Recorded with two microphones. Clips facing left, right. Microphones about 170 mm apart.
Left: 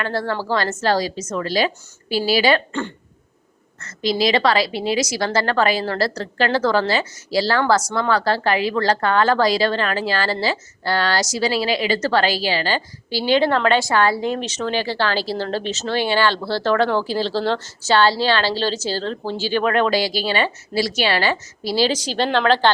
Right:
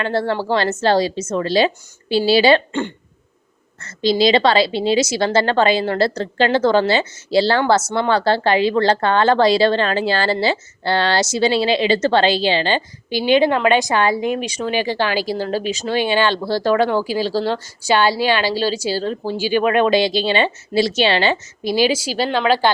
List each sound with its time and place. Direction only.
0.0 s a woman's voice: 25° right (ahead or behind); by 22.7 s 10° right (ahead or behind)